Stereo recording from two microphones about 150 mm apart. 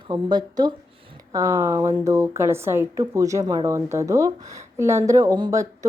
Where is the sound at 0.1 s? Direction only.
30° right (ahead or behind).